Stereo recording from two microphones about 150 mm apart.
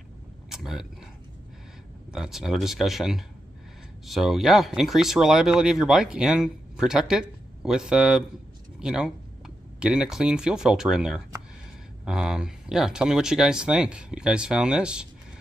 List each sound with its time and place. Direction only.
0.5 s speech: centre (ahead or behind)
2.1 s speech: centre (ahead or behind)